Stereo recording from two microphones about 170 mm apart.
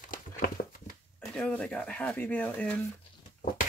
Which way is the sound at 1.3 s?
5° left (ahead or behind).